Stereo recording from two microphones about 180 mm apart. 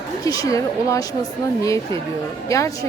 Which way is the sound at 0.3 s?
20° left (ahead or behind).